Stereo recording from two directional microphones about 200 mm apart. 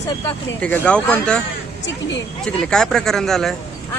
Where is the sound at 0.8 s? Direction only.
5° left (ahead or behind).